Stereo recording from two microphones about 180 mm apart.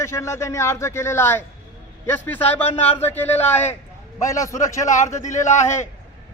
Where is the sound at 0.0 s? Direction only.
15° left (ahead or behind).